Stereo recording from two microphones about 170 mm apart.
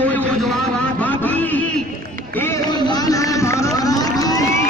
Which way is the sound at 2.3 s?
15° left (ahead or behind).